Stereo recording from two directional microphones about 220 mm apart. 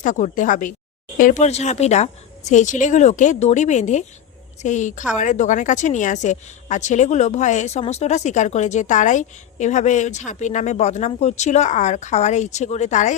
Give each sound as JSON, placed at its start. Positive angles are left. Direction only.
{"t": 0.0, "sound": "a woman's voice", "side_deg": 35}